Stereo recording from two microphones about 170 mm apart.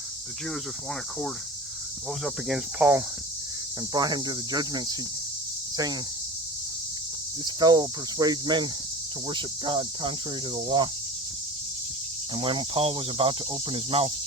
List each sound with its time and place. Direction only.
2.2 s cricket: 5° right (ahead or behind)
3.9 s cricket: 25° right (ahead or behind)
5.7 s speech: 25° right (ahead or behind)
7.4 s cricket: 25° right (ahead or behind)
12.4 s cricket: 30° right (ahead or behind)